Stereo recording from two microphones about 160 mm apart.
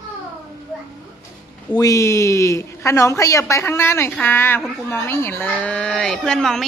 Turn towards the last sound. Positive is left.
turn(degrees=5)  # may be behind; listen again after turning